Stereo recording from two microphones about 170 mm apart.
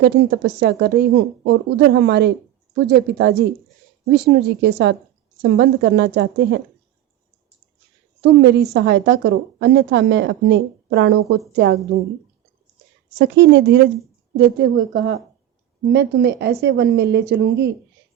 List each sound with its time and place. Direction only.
0.0 s speech: 90° right
2.7 s a woman's voice: 75° right (ahead or behind); by 4.9 s 90° right
5.4 s a woman's voice: 80° right
8.2 s a woman's voice: 75° right (ahead or behind)
13.1 s a woman's voice: 90° right
15.9 s speech: 80° right